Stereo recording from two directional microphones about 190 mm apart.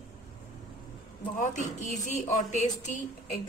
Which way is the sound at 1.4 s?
40° left (ahead or behind).